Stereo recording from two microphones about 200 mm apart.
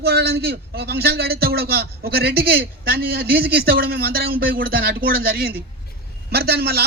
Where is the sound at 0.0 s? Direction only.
55° right (ahead or behind).